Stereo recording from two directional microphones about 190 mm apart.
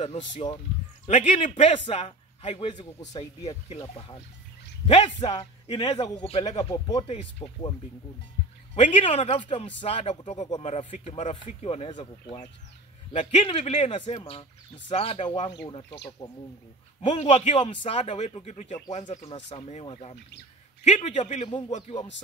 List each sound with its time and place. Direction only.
0.0 s a man's voice: 35° left (ahead or behind)
3.4 s a man's voice: 35° left (ahead or behind)
8.7 s a man's voice: 35° left (ahead or behind)
17.0 s speech: 35° left (ahead or behind)